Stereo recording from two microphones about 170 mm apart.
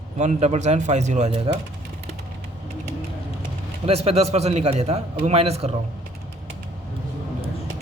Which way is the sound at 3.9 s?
35° right (ahead or behind).